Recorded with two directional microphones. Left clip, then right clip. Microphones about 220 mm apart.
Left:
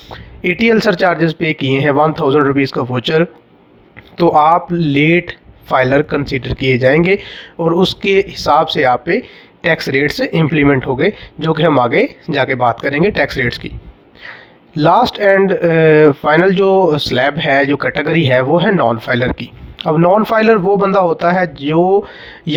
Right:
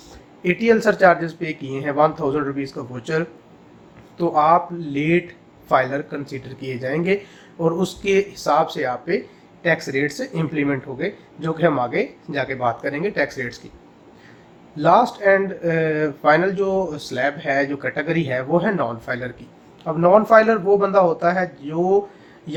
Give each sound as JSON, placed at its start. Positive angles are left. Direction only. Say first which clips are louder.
{"t": 0.4, "sound": "speech", "louder": "left 5 dB", "side_deg": 40}
{"t": 14.8, "sound": "speech", "louder": "left 5 dB", "side_deg": 40}